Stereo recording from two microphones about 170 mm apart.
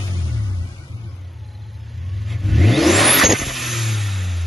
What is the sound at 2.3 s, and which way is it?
Vehicle, centre (ahead or behind).